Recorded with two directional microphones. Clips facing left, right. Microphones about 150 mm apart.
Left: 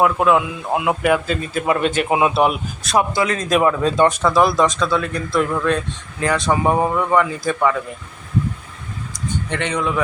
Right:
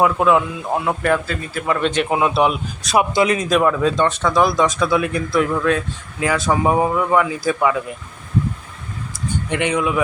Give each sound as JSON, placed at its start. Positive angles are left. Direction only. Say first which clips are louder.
{"t": 0.0, "sound": "speech", "louder": "even", "side_deg": 0}
{"t": 1.8, "sound": "speech", "louder": "right 1 dB", "side_deg": 5}
{"t": 3.0, "sound": "a man's voice", "louder": "right 3 dB", "side_deg": -15}
{"t": 3.5, "sound": "speech", "louder": "even", "side_deg": 5}
{"t": 4.8, "sound": "a man's voice", "louder": "right 2 dB", "side_deg": -15}
{"t": 5.3, "sound": "speech", "louder": "even", "side_deg": 0}
{"t": 9.5, "sound": "a man's voice", "louder": "right 3 dB", "side_deg": -10}